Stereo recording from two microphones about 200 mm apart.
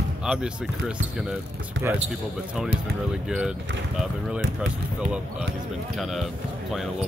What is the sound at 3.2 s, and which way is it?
Speech, 5° right (ahead or behind).